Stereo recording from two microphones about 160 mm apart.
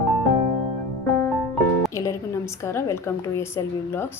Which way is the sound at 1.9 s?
20° left (ahead or behind).